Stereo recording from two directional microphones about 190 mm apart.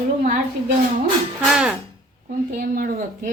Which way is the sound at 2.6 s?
50° right (ahead or behind).